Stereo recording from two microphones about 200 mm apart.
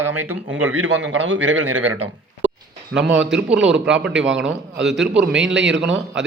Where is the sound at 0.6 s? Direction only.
85° right.